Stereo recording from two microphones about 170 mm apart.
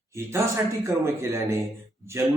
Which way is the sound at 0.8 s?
15° right (ahead or behind).